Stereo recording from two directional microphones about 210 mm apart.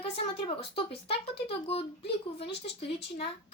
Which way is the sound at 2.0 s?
50° left (ahead or behind).